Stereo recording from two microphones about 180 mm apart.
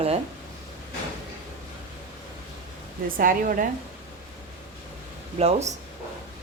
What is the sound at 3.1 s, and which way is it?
Speech, 50° right (ahead or behind).